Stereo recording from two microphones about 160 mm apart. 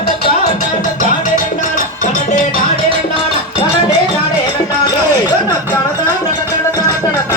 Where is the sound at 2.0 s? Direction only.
50° left (ahead or behind).